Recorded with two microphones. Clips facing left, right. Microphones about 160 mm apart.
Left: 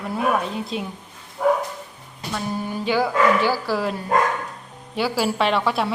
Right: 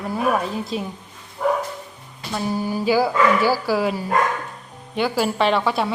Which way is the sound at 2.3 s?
10° right (ahead or behind).